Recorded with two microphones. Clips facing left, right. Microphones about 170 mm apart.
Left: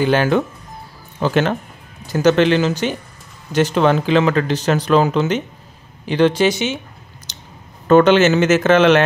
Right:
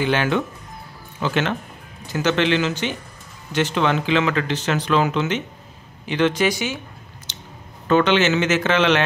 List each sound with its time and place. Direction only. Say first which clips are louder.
0.0 s speech: left 5 dB; 40° left (ahead or behind); by 6.8 s 25° left (ahead or behind)
7.3 s a sound: right 2 dB; 40° left (ahead or behind)
7.9 s speech: left 6 dB; 45° left (ahead or behind)